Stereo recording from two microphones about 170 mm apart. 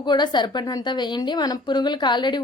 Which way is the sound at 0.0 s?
25° left (ahead or behind).